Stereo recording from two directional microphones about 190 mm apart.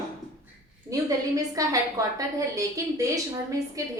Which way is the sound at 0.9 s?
20° right (ahead or behind).